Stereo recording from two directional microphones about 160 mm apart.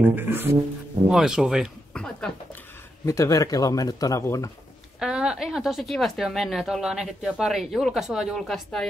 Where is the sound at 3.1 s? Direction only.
20° left (ahead or behind).